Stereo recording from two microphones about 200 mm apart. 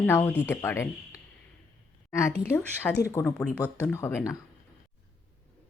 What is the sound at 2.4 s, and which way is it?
Speech, 10° left (ahead or behind).